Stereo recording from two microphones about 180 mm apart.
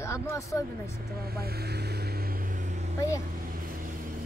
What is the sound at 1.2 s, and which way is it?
Vehicle, 60° right (ahead or behind).